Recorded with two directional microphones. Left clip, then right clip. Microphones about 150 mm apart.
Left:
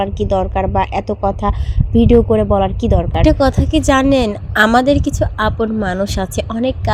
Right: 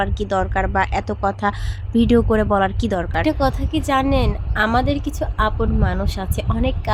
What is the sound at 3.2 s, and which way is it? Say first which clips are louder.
A woman's voice: left 6 dB; 35° left (ahead or behind).